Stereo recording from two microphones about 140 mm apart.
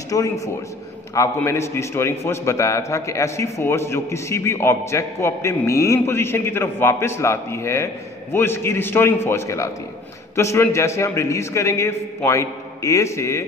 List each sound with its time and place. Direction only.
0.1 s a man's voice: 25° left (ahead or behind)